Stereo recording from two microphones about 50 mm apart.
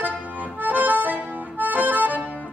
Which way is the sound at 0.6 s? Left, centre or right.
Right.